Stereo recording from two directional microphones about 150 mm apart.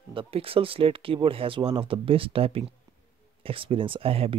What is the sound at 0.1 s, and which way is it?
Speech, 35° right (ahead or behind).